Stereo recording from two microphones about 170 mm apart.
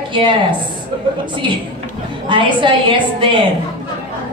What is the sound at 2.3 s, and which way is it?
A woman's voice, 30° right (ahead or behind).